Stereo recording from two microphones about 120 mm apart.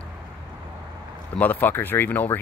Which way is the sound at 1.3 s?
15° left (ahead or behind).